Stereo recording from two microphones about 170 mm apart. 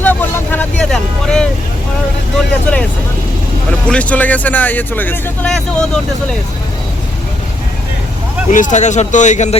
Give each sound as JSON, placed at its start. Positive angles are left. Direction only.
{"t": 0.0, "sound": "vehicle", "side_deg": 10}
{"t": 2.7, "sound": "vehicle", "side_deg": 5}
{"t": 3.7, "sound": "speech", "side_deg": 5}
{"t": 8.4, "sound": "speech", "side_deg": 50}